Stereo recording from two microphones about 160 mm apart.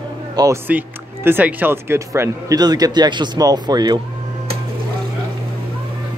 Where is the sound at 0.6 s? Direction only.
10° right (ahead or behind).